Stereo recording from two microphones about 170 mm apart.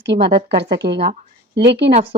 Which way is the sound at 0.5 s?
80° right.